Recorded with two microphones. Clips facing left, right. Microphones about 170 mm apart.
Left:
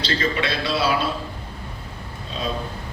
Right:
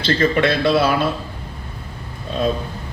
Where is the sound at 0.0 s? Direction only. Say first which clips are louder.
Right 7 dB; 50° right (ahead or behind).